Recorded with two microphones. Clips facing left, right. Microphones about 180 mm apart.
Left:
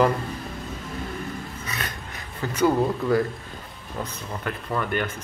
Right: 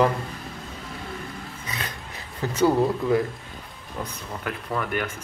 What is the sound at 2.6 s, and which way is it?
Speech, 10° right (ahead or behind).